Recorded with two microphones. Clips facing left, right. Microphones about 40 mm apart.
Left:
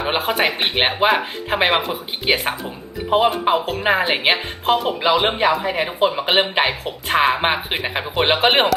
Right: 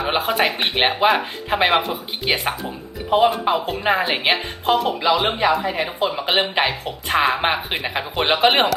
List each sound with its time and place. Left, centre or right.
0.0 s speech: centre